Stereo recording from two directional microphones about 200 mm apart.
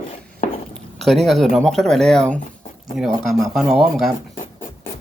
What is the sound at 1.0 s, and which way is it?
Speech, centre (ahead or behind).